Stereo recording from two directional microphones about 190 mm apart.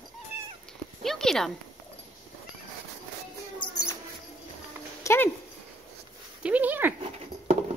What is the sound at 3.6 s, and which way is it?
Rodents, 20° left (ahead or behind).